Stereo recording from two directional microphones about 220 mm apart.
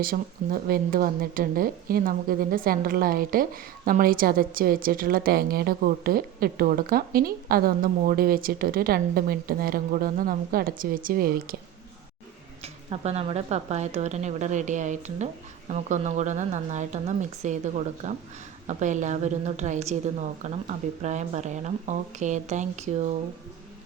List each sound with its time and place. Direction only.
0.0 s speech: 40° right (ahead or behind)
12.6 s speech: 30° right (ahead or behind)